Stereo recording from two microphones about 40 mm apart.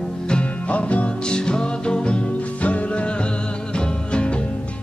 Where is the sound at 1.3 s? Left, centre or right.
Left.